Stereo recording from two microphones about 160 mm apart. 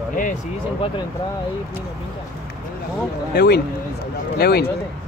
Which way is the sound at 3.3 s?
85° left.